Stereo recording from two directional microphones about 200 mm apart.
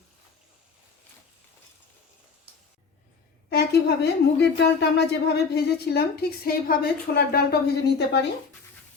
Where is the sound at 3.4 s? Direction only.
55° left (ahead or behind).